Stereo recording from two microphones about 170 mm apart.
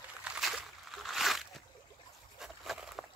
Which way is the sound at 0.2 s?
5° right (ahead or behind).